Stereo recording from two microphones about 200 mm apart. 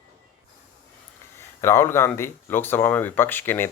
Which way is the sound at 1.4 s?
10° left (ahead or behind).